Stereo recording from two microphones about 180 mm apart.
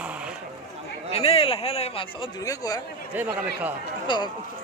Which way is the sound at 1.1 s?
35° left (ahead or behind).